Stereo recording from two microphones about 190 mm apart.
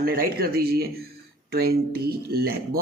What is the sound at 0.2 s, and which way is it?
Speech, 55° right (ahead or behind).